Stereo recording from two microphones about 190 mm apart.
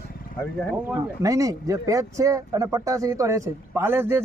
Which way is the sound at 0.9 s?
15° right (ahead or behind).